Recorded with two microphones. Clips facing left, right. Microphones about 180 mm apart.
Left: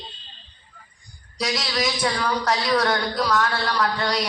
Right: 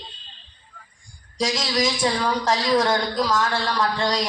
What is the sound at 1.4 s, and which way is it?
A woman's voice, 25° right (ahead or behind).